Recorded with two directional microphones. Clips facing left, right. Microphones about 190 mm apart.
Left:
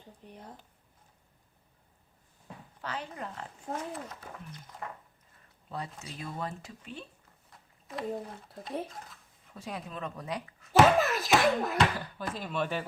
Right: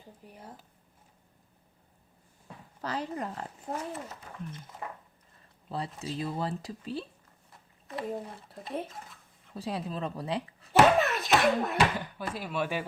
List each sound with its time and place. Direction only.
0.3 s speech: 5° right (ahead or behind)
2.8 s speech: 40° right (ahead or behind)
3.7 s speech: 5° right (ahead or behind)
5.6 s speech: 30° right (ahead or behind)
7.9 s speech: centre (ahead or behind)
9.6 s speech: 30° right (ahead or behind)
10.7 s speech: centre (ahead or behind)
11.9 s speech: 15° right (ahead or behind)